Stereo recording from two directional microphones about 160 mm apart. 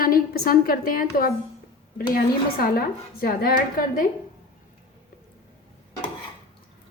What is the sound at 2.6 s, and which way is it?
A woman's voice, 65° left (ahead or behind).